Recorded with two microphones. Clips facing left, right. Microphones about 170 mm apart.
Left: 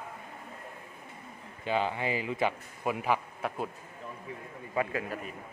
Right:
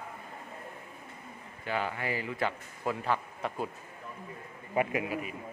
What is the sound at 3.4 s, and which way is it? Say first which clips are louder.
Speech: even; 5° left (ahead or behind).